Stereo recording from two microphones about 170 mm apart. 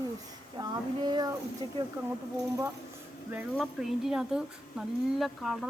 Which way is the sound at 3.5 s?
Centre (ahead or behind).